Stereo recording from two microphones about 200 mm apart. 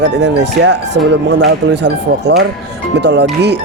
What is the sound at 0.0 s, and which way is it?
Speech, 60° right (ahead or behind).